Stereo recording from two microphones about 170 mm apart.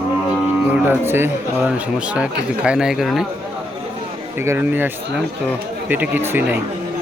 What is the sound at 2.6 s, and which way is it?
Speech, 5° right (ahead or behind).